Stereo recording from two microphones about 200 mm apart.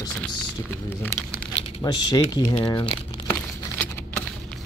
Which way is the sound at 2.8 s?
5° left (ahead or behind).